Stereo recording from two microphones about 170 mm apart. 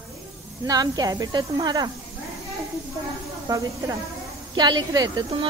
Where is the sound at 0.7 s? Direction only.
20° right (ahead or behind).